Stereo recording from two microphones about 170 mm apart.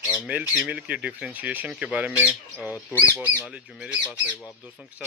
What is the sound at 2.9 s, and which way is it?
Speech, 15° left (ahead or behind).